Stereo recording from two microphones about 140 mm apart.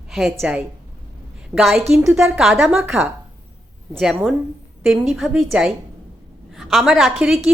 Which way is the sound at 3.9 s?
5° right (ahead or behind).